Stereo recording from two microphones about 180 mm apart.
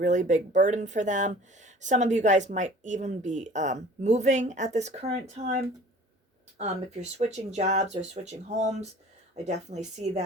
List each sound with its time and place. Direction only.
0.0 s speech: 45° right (ahead or behind)
6.6 s speech: 40° right (ahead or behind)